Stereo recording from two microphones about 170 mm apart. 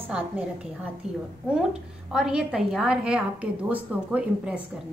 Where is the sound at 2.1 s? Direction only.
5° right (ahead or behind).